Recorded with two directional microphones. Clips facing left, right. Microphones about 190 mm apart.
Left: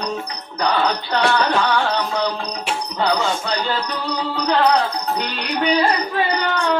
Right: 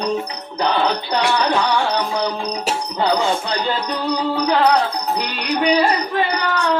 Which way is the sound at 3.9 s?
15° right (ahead or behind).